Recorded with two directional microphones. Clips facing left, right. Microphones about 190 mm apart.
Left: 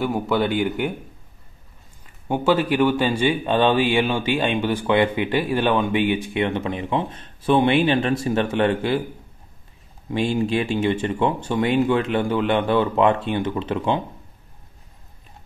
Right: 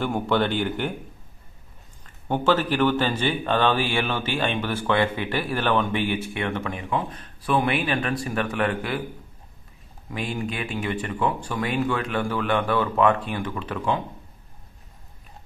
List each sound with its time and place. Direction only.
0.0 s speech: 5° left (ahead or behind)
2.2 s speech: 10° left (ahead or behind)
10.0 s speech: 25° left (ahead or behind)